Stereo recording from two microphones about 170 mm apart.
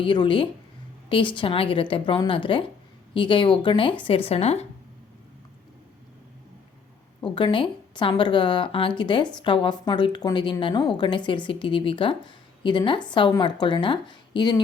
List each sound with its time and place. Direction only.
0.0 s speech: 30° left (ahead or behind)
7.2 s speech: 30° left (ahead or behind)